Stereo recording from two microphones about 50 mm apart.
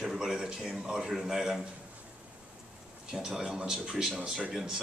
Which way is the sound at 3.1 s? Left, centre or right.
Centre.